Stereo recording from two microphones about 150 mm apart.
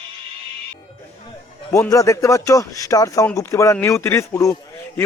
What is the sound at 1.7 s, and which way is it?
Speech, 20° left (ahead or behind).